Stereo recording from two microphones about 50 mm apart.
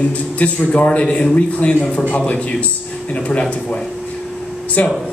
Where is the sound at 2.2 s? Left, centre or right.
Left.